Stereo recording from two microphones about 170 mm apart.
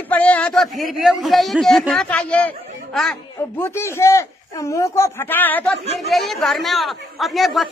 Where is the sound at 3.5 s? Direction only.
15° left (ahead or behind).